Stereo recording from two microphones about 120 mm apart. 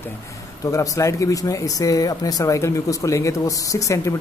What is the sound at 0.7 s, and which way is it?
Speech, 25° left (ahead or behind).